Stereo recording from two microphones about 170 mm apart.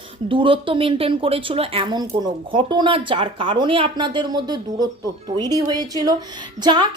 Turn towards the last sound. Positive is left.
turn(degrees=-25)  # may be behind; listen again after turning